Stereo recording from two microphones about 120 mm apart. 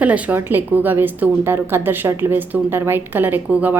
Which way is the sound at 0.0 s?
15° right (ahead or behind).